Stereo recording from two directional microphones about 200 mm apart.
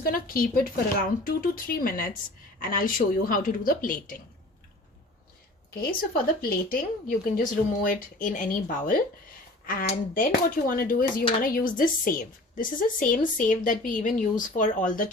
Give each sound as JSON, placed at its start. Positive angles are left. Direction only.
{"t": 0.0, "sound": "a woman's voice", "side_deg": 45}
{"t": 6.7, "sound": "a woman's voice", "side_deg": 45}